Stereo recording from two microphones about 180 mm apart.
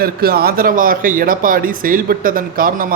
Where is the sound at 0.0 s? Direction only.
55° right (ahead or behind).